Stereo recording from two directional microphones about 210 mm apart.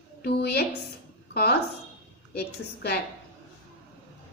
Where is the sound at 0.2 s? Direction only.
50° left (ahead or behind).